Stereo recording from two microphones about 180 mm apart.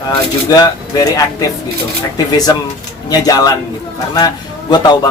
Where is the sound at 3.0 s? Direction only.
20° left (ahead or behind).